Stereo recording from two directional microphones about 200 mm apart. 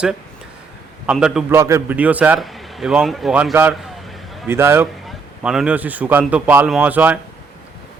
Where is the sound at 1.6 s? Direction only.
15° right (ahead or behind).